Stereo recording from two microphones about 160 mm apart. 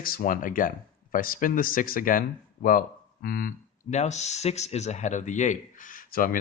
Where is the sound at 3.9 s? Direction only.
45° left (ahead or behind).